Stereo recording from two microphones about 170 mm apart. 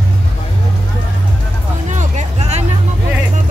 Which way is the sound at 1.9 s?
40° right (ahead or behind).